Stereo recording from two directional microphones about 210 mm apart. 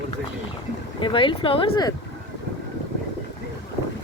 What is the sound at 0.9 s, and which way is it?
Speech, 25° left (ahead or behind).